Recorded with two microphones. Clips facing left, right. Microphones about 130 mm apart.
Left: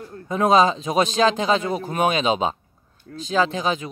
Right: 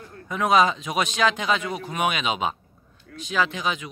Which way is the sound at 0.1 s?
30° left (ahead or behind).